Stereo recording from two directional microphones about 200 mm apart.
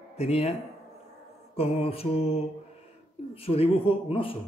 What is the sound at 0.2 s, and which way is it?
Speech, 30° left (ahead or behind).